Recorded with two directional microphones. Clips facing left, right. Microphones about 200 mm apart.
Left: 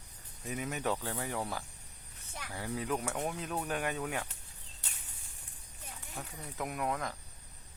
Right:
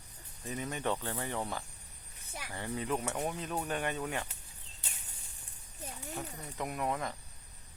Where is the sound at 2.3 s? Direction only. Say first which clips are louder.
Even; 10° right (ahead or behind).